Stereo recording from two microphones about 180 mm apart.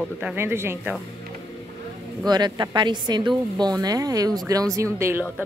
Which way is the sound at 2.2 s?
25° right (ahead or behind).